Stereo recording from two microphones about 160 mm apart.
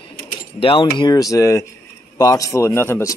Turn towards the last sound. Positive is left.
turn(degrees=15)  # may be behind; listen again after turning